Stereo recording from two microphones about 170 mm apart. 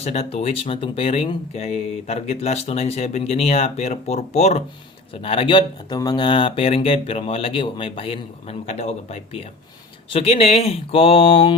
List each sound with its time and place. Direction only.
0.0 s speech: 40° left (ahead or behind)